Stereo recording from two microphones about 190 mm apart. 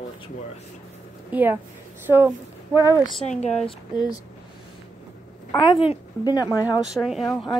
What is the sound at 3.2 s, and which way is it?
Speech, 35° left (ahead or behind).